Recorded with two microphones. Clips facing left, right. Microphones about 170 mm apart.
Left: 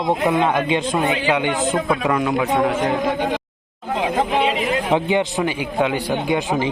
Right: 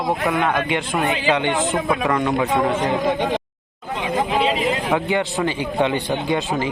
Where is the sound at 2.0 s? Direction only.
10° left (ahead or behind).